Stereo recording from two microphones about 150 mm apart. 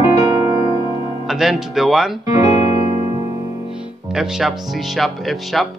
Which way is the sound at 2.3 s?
25° right (ahead or behind).